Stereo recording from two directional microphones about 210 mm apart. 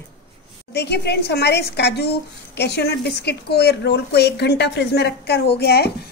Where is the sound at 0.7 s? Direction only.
50° left (ahead or behind).